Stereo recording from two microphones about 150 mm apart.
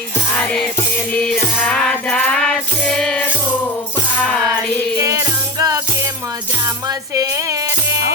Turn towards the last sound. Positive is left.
turn(degrees=-20)  # may be behind; listen again after turning